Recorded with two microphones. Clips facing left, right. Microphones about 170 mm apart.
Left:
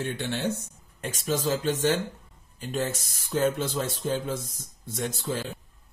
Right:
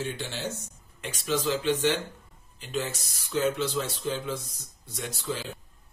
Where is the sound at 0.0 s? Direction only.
60° left (ahead or behind).